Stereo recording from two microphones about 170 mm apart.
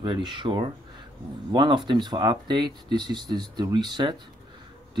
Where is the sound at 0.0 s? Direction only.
30° right (ahead or behind).